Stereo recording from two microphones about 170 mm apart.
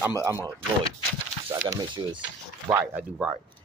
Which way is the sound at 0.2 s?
15° right (ahead or behind).